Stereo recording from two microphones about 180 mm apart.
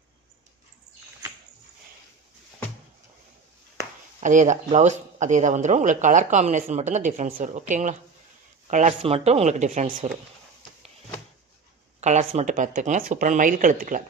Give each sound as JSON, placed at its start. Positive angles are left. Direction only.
{"t": 4.2, "sound": "speech", "side_deg": -45}
{"t": 12.0, "sound": "speech", "side_deg": -40}